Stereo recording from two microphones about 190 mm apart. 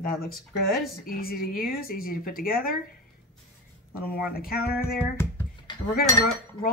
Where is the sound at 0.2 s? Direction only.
50° left (ahead or behind).